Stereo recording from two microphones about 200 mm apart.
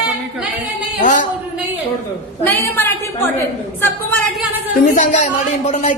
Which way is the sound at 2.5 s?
10° left (ahead or behind).